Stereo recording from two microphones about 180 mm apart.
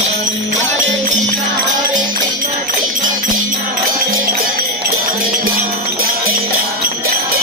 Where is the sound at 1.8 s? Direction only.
45° right (ahead or behind).